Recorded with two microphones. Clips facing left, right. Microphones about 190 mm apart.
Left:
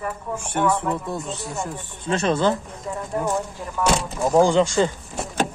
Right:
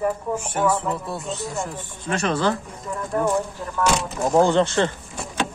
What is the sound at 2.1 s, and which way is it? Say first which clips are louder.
Speech: left 2 dB; 25° left (ahead or behind).